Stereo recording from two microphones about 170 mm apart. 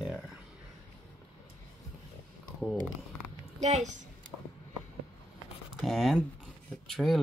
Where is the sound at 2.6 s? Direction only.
Centre (ahead or behind).